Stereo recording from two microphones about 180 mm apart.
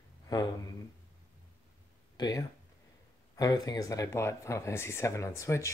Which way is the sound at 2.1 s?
25° left (ahead or behind).